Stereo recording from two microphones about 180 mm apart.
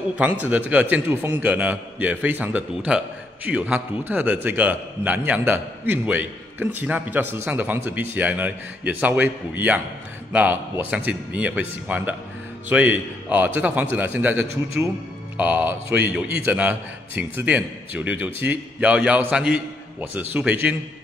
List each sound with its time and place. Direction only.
0.2 s a man's voice: 10° right (ahead or behind)
10.3 s a man's voice: 10° right (ahead or behind)